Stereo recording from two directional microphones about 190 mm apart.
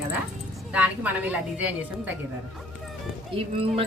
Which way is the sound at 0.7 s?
10° right (ahead or behind).